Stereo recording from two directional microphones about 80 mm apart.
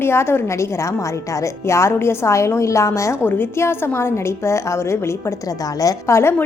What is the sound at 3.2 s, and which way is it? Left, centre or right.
A woman's voice, left.